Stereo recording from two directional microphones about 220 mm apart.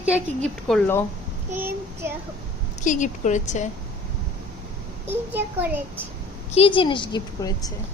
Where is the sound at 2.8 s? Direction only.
35° left (ahead or behind).